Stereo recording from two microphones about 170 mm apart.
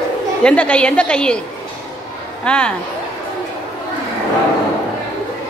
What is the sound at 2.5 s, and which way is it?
Speech, 5° left (ahead or behind).